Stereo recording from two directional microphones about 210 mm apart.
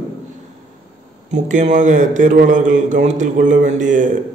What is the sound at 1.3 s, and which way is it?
A man's voice, 35° right (ahead or behind).